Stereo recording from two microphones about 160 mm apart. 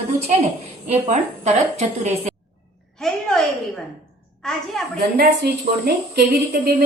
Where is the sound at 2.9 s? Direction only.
5° left (ahead or behind).